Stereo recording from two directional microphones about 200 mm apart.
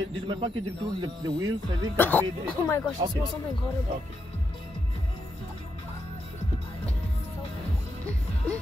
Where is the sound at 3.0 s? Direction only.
25° right (ahead or behind).